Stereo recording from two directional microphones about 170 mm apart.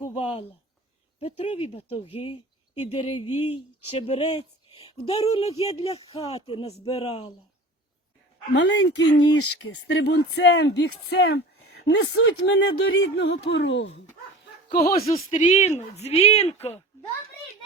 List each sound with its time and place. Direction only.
0.1 s a sound: 30° left (ahead or behind)
1.2 s speech: 35° left (ahead or behind)
8.5 s speech: 90° left
14.9 s speech: 35° left (ahead or behind)